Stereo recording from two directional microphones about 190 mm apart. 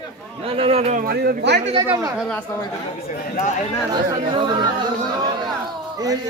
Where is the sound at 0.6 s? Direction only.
30° right (ahead or behind).